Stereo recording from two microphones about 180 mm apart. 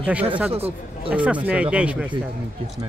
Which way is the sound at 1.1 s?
5° right (ahead or behind).